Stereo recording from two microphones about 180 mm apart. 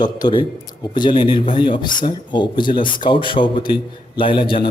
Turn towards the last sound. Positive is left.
turn(degrees=30)  # may be behind; listen again after turning